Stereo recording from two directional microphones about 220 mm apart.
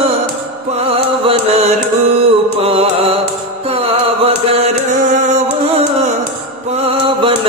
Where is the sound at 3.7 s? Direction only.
25° right (ahead or behind).